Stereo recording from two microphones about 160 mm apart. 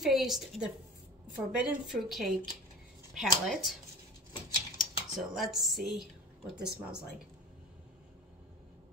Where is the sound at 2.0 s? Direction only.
Centre (ahead or behind).